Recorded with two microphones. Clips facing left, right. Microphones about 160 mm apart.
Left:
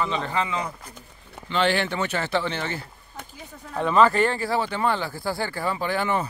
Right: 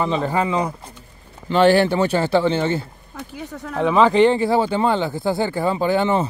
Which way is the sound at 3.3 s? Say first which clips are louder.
Right 6 dB; 80° right.